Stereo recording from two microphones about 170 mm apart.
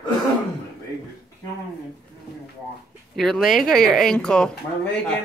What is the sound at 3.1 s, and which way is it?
Speech, centre (ahead or behind).